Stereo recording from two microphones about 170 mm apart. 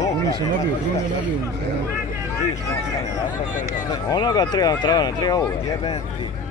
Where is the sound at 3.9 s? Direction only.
20° left (ahead or behind).